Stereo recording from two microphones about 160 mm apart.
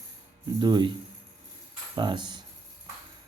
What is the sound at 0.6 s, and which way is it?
Speech, 25° right (ahead or behind).